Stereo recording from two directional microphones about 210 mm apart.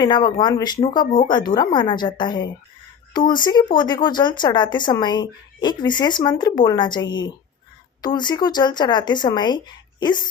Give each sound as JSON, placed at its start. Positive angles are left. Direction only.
{"t": 0.0, "sound": "speech", "side_deg": 20}